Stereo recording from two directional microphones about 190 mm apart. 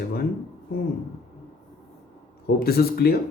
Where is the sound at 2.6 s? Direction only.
55° left (ahead or behind).